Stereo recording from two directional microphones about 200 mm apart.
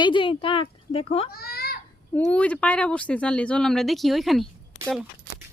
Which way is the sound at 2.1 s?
5° left (ahead or behind).